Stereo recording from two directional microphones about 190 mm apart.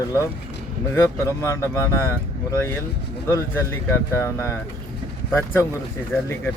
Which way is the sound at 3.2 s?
15° left (ahead or behind).